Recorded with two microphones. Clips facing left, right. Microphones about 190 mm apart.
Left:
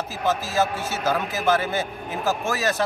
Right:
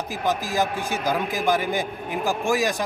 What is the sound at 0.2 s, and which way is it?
A man's voice, 15° right (ahead or behind).